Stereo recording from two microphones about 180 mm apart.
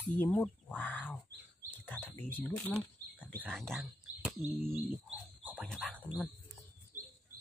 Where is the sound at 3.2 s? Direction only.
5° left (ahead or behind).